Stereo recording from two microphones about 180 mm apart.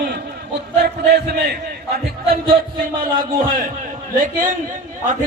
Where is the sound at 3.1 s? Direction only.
50° right (ahead or behind).